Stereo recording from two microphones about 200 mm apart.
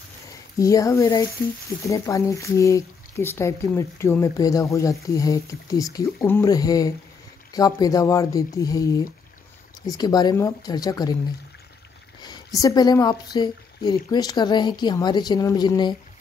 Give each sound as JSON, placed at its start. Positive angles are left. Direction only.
{"t": 0.6, "sound": "speech", "side_deg": 15}
{"t": 12.2, "sound": "speech", "side_deg": 20}